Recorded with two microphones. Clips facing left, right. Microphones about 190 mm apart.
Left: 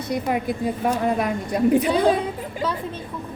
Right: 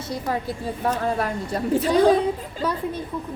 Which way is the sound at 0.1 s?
15° left (ahead or behind).